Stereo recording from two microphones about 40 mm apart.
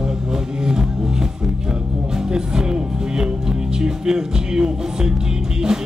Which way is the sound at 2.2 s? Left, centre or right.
Centre.